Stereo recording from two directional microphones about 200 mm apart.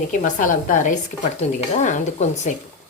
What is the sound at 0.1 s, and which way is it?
Speech, 40° left (ahead or behind).